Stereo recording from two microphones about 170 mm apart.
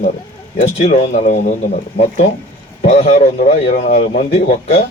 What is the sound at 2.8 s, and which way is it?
Speech, 40° left (ahead or behind).